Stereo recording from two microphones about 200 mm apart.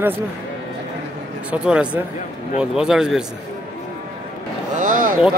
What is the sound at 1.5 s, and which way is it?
Speech, 5° right (ahead or behind).